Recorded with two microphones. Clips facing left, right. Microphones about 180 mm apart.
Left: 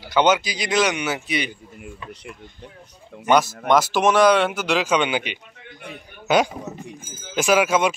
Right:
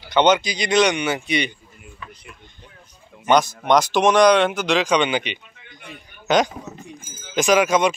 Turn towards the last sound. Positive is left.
turn(degrees=5)  # may be behind; listen again after turning